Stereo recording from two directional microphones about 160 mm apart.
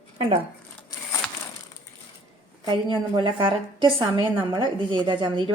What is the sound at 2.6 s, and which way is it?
Speech, 30° right (ahead or behind).